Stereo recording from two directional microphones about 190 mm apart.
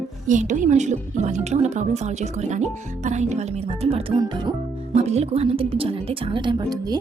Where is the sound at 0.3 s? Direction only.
40° right (ahead or behind).